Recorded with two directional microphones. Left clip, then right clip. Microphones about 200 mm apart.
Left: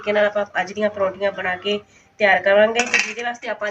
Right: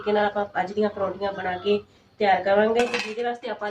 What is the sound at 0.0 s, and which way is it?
Speech, centre (ahead or behind).